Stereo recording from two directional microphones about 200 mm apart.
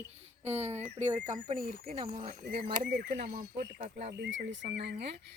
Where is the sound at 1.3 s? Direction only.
45° right (ahead or behind).